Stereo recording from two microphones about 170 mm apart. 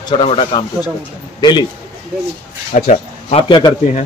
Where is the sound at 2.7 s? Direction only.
45° left (ahead or behind).